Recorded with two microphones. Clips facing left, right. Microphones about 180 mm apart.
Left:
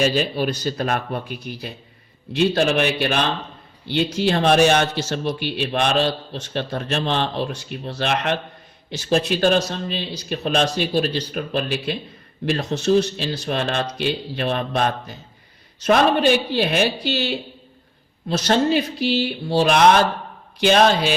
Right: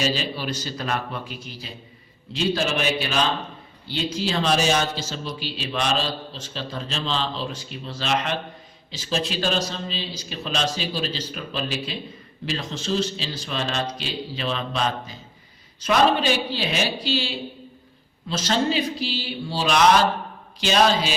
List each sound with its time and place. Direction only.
0.0 s a man's voice: 55° left (ahead or behind)